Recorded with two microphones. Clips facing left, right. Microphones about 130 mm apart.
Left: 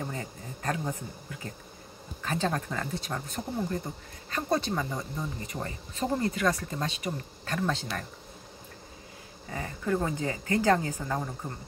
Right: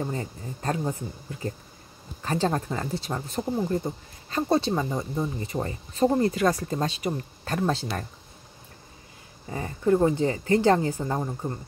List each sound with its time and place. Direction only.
0.0 s speech: 30° right (ahead or behind)
9.5 s speech: 30° right (ahead or behind)